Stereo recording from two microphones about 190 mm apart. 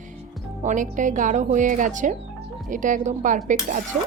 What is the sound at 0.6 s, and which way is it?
Speech, 40° right (ahead or behind).